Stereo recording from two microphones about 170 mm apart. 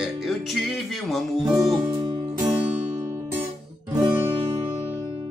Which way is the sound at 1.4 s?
20° right (ahead or behind).